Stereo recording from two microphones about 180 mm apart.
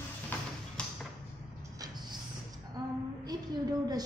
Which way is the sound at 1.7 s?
20° right (ahead or behind).